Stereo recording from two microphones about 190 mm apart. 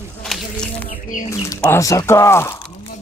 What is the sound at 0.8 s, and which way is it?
Bird, 45° left (ahead or behind).